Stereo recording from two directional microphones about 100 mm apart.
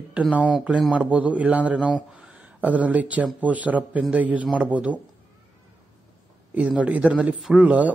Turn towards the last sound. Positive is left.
turn(degrees=-15)  # may be behind; listen again after turning